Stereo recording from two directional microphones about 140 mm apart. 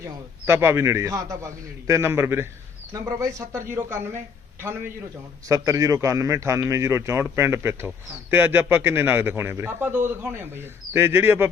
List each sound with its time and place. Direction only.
0.0 s a man's voice: 15° right (ahead or behind)